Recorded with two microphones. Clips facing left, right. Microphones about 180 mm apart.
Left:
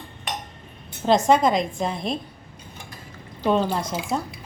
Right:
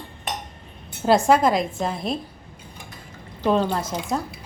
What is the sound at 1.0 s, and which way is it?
A woman's voice, 5° right (ahead or behind).